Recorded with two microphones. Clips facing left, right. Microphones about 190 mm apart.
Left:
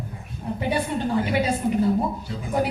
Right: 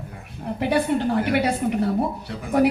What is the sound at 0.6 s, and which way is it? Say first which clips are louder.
A woman's voice: right 4 dB; 65° right (ahead or behind).